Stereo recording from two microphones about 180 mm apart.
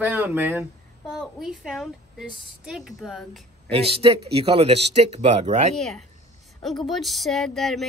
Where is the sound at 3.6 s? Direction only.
30° right (ahead or behind).